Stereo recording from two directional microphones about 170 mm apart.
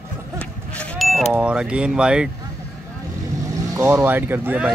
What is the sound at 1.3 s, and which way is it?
Speech, 5° right (ahead or behind).